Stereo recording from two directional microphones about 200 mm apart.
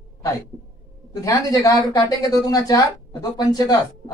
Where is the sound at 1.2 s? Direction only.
15° left (ahead or behind).